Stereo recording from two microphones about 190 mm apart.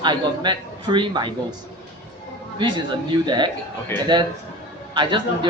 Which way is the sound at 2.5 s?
25° right (ahead or behind).